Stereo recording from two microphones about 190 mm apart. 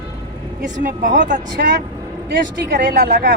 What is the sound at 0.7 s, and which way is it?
Speech, 40° right (ahead or behind).